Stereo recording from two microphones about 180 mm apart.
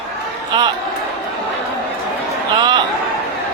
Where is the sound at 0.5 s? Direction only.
25° right (ahead or behind).